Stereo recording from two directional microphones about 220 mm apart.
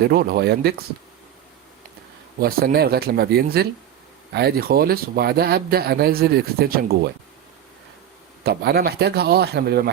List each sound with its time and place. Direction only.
0.0 s speech: 45° right (ahead or behind)
2.4 s speech: 45° right (ahead or behind)
8.4 s speech: 45° right (ahead or behind)